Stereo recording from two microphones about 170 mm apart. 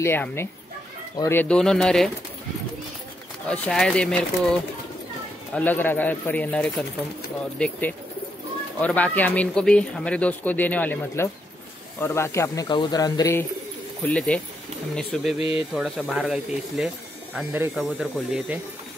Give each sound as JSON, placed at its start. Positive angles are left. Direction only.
{"t": 0.0, "sound": "speech", "side_deg": 15}
{"t": 3.4, "sound": "speech", "side_deg": 5}
{"t": 14.0, "sound": "speech", "side_deg": 5}
{"t": 15.3, "sound": "speech", "side_deg": 35}
{"t": 15.7, "sound": "speech", "side_deg": -5}